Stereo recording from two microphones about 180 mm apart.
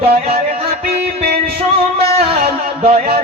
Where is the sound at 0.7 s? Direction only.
60° right (ahead or behind).